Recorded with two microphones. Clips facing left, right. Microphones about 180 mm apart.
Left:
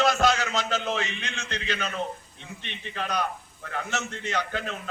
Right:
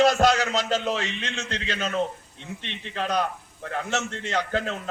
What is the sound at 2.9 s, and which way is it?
Speech, 40° right (ahead or behind).